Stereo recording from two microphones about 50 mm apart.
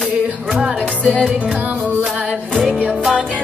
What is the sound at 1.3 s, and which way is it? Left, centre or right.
Music, right.